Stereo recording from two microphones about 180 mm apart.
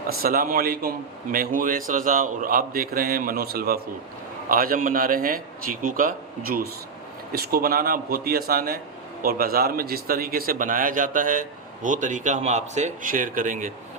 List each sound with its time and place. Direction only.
0.1 s a man's voice: 55° right (ahead or behind)